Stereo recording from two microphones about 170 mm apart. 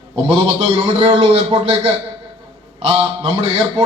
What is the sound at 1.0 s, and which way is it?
Speech, 40° right (ahead or behind).